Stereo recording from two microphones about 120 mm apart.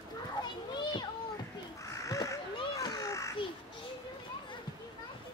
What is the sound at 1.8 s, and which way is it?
Crow, 25° left (ahead or behind).